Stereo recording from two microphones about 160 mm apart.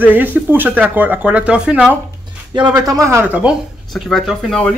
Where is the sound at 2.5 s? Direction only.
25° right (ahead or behind); by 4.6 s centre (ahead or behind).